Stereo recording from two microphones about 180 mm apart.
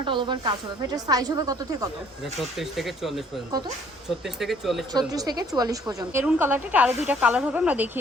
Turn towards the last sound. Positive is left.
turn(degrees=-10)  # may be behind; listen again after turning